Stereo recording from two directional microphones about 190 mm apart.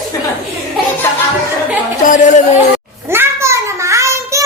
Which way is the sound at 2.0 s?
45° left (ahead or behind).